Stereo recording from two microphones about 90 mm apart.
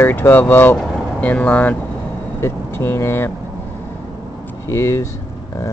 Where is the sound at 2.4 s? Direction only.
30° left (ahead or behind).